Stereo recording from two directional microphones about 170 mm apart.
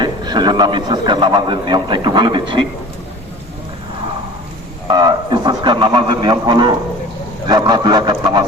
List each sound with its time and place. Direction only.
0.0 s a man's voice: 25° right (ahead or behind)
4.9 s a man's voice: 25° right (ahead or behind)